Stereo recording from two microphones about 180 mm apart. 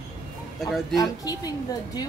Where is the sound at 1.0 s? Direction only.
20° left (ahead or behind).